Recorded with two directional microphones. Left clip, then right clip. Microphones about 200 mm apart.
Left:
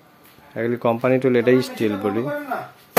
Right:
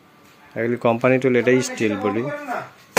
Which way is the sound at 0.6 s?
5° right (ahead or behind).